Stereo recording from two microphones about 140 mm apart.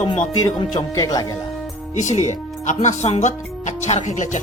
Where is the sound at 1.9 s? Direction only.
60° left (ahead or behind).